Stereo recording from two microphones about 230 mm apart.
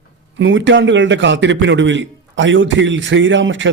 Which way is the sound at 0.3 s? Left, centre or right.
Right.